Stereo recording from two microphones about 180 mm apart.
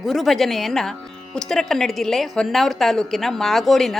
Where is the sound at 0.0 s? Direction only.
Centre (ahead or behind).